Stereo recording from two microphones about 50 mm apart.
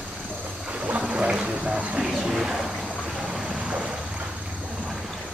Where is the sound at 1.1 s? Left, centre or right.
Centre.